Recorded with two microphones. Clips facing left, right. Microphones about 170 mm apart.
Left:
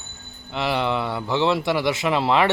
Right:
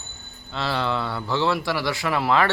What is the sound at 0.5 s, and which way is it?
A man's voice, 15° left (ahead or behind).